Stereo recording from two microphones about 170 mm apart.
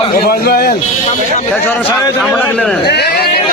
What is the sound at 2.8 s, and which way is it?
Speech, 75° left (ahead or behind).